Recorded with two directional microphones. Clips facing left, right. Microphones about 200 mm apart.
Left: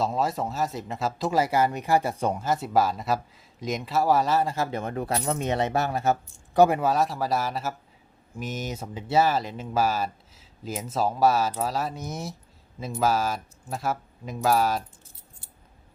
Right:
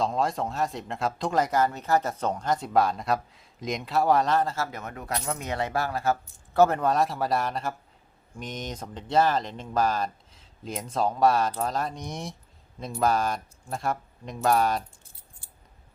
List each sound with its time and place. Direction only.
0.0 s speech: 5° left (ahead or behind)